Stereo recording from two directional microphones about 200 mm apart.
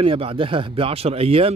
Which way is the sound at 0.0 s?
30° right (ahead or behind).